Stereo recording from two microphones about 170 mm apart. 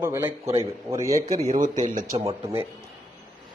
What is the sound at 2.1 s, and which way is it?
Speech, 30° right (ahead or behind).